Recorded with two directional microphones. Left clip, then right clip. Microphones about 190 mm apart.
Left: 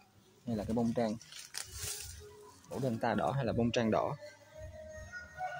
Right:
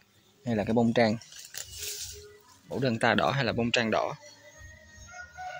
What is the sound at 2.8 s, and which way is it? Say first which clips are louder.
Speech: right 8 dB; 35° right (ahead or behind).